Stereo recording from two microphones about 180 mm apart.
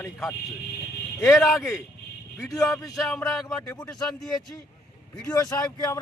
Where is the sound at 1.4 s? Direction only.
Centre (ahead or behind).